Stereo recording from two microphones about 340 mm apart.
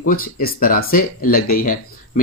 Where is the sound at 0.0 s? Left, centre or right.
Left.